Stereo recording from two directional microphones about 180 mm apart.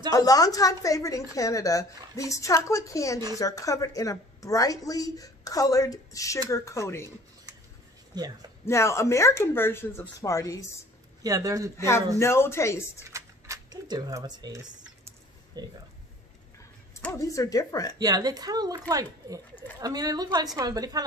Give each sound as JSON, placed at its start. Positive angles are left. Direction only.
{"t": 0.1, "sound": "a woman's voice", "side_deg": 20}
{"t": 8.1, "sound": "speech", "side_deg": -20}
{"t": 8.6, "sound": "speech", "side_deg": 15}
{"t": 11.2, "sound": "speech", "side_deg": -20}
{"t": 11.7, "sound": "speech", "side_deg": 15}
{"t": 13.0, "sound": "a sound", "side_deg": -15}
{"t": 15.6, "sound": "speech", "side_deg": -20}
{"t": 16.9, "sound": "a woman's voice", "side_deg": 15}
{"t": 17.9, "sound": "speech", "side_deg": -20}